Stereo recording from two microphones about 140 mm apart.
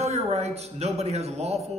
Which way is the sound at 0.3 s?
50° right (ahead or behind).